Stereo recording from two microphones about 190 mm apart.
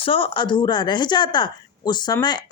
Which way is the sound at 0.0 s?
30° left (ahead or behind).